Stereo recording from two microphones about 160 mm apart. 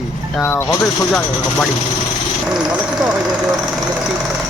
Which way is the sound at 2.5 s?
5° right (ahead or behind).